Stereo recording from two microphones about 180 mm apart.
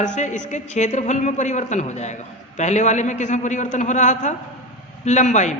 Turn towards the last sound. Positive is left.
turn(degrees=40)  # may be behind; listen again after turning